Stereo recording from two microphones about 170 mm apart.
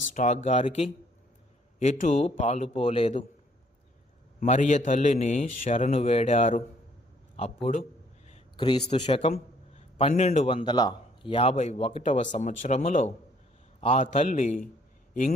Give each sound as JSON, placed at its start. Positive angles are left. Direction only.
{"t": 0.1, "sound": "a man's voice", "side_deg": 45}
{"t": 1.8, "sound": "a man's voice", "side_deg": 45}
{"t": 4.4, "sound": "a man's voice", "side_deg": 45}
{"t": 8.5, "sound": "a man's voice", "side_deg": 25}